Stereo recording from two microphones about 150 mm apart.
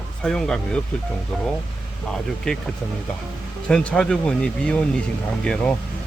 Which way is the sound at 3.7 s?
5° left (ahead or behind).